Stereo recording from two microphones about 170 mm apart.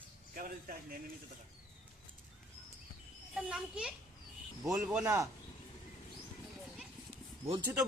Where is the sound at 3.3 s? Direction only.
5° right (ahead or behind).